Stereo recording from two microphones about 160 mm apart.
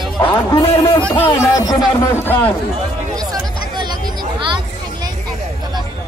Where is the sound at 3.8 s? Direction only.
25° right (ahead or behind).